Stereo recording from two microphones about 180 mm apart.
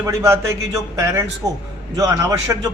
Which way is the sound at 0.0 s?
15° right (ahead or behind).